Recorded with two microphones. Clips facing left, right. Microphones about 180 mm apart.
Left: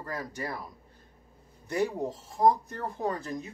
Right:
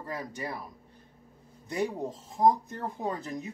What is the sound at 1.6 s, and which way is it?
Speech, 20° right (ahead or behind).